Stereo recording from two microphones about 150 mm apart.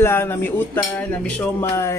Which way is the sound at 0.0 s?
15° left (ahead or behind).